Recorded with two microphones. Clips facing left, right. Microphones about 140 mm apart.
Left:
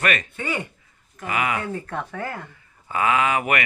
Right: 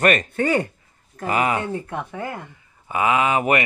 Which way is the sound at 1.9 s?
15° right (ahead or behind).